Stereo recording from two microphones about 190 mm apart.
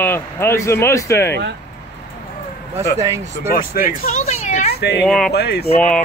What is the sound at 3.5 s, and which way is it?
Speech, 45° left (ahead or behind).